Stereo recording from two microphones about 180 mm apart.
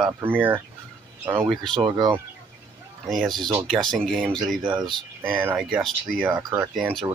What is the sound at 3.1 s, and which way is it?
Speech, centre (ahead or behind).